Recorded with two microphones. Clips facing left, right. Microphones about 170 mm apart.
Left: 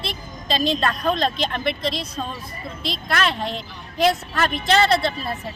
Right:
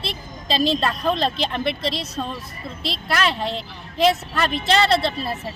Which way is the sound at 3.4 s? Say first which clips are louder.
Right 1 dB; 30° right (ahead or behind).